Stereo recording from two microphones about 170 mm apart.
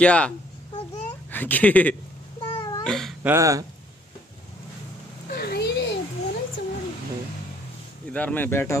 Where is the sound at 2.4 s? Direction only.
30° left (ahead or behind).